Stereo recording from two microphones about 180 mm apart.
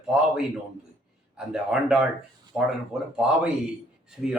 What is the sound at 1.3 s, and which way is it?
Speech, 5° right (ahead or behind).